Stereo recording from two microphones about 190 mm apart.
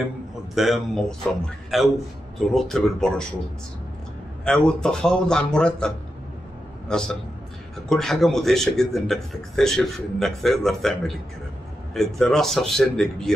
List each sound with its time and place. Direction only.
0.6 s a man's voice: centre (ahead or behind)
4.5 s a man's voice: 5° left (ahead or behind)